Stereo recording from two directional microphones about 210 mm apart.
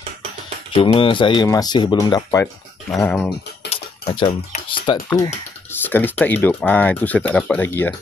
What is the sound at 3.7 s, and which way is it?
Speech, 25° left (ahead or behind).